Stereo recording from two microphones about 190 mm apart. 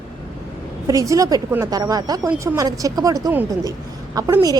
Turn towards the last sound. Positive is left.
turn(degrees=-20)  # may be behind; listen again after turning